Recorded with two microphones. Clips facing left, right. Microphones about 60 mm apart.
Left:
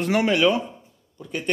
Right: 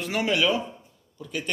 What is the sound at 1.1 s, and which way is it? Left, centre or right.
Speech, left.